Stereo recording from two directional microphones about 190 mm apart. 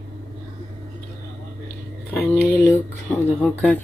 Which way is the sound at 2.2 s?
10° left (ahead or behind).